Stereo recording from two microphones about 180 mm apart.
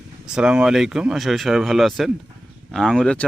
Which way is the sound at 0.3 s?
5° right (ahead or behind).